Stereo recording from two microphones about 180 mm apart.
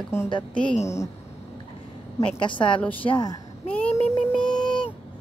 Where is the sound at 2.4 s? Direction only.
25° left (ahead or behind).